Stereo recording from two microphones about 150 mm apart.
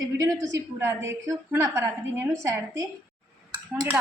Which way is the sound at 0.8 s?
15° right (ahead or behind).